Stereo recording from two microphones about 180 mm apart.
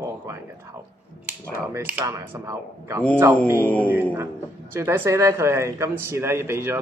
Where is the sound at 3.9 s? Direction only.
10° right (ahead or behind).